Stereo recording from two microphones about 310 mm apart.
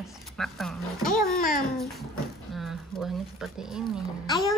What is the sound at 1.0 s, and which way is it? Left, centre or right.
Speech, left.